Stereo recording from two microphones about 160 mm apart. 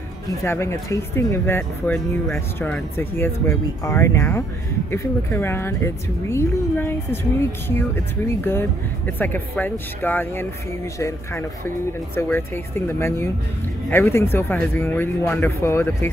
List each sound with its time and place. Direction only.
0.3 s speech: 15° left (ahead or behind)